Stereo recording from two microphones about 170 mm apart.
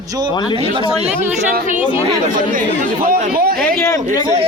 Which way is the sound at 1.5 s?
50° right (ahead or behind).